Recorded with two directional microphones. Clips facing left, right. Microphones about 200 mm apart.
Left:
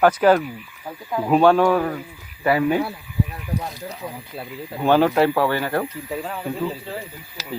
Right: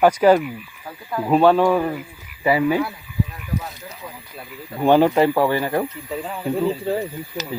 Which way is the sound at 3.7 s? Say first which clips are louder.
Left 5 dB; 35° left (ahead or behind).